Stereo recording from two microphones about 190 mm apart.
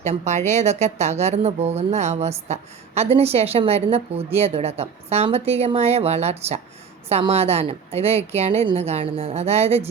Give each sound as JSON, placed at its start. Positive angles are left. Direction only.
{"t": 0.0, "sound": "speech", "side_deg": -35}